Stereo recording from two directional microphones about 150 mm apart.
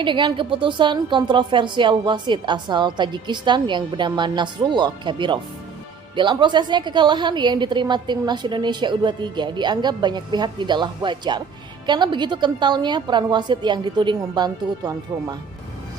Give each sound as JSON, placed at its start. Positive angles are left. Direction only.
{"t": 0.0, "sound": "a woman's voice", "side_deg": -30}